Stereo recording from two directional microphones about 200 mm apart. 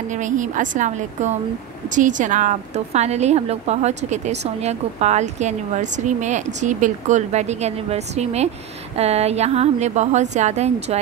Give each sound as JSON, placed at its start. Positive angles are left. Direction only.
{"t": 0.1, "sound": "speech", "side_deg": -40}